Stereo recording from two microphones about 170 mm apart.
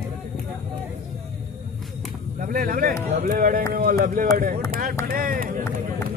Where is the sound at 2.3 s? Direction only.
55° right (ahead or behind).